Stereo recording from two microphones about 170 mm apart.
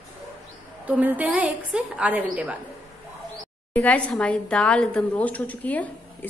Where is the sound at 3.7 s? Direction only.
10° left (ahead or behind).